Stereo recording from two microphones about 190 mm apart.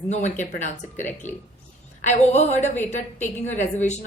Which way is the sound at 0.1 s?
40° left (ahead or behind).